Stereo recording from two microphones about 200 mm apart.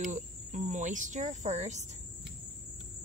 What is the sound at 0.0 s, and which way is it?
Cricket, 35° right (ahead or behind).